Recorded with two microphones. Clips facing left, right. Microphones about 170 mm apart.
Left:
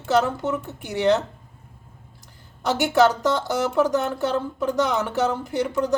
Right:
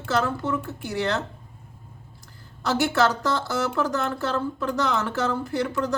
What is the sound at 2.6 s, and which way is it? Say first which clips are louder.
A woman's voice: left 3 dB; 15° left (ahead or behind).